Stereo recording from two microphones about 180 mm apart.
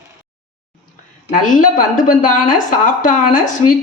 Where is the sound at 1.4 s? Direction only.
45° left (ahead or behind).